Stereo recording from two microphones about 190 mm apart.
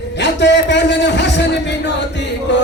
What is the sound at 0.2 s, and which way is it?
Music, 65° left (ahead or behind).